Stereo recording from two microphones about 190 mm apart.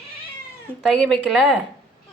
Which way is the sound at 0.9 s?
5° left (ahead or behind).